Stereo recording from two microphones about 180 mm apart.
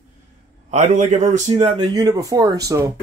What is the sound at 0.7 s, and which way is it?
A man's voice, 40° right (ahead or behind).